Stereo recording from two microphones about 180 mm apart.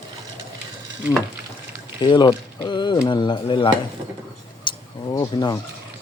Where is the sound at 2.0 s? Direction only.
25° left (ahead or behind).